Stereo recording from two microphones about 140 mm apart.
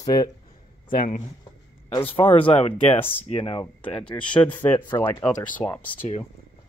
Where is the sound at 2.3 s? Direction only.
40° left (ahead or behind).